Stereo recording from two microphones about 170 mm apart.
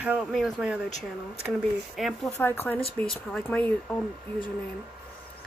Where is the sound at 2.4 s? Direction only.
10° left (ahead or behind).